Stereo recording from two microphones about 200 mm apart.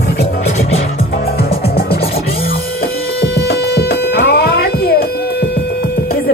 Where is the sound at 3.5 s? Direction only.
55° left (ahead or behind).